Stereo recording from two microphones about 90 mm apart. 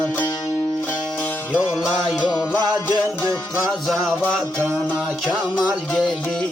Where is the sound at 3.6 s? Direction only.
5° left (ahead or behind).